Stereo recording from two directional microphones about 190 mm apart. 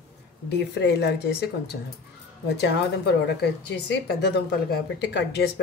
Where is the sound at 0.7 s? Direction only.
60° left (ahead or behind).